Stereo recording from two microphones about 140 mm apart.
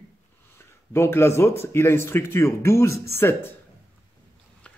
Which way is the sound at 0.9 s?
20° left (ahead or behind).